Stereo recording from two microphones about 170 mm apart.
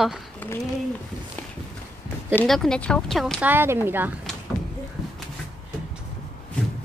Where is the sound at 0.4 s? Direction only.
10° left (ahead or behind).